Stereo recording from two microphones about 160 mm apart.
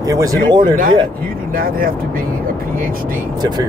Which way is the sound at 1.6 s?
65° right (ahead or behind).